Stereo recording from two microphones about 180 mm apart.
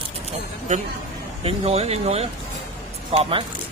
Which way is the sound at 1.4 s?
35° right (ahead or behind).